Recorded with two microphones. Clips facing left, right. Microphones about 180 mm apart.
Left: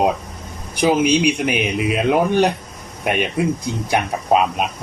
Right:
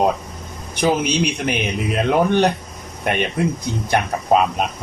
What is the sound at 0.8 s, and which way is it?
Speech, 5° left (ahead or behind).